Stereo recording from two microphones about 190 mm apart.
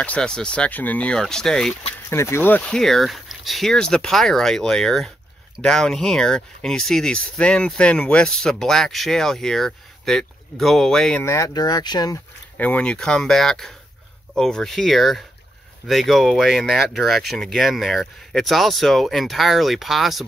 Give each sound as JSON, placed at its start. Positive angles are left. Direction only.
{"t": 0.0, "sound": "speech", "side_deg": 5}
{"t": 2.0, "sound": "speech", "side_deg": 15}
{"t": 11.2, "sound": "speech", "side_deg": 15}
{"t": 12.5, "sound": "speech", "side_deg": 5}